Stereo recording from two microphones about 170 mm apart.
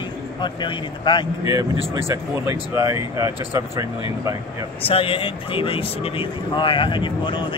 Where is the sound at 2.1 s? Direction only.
15° right (ahead or behind).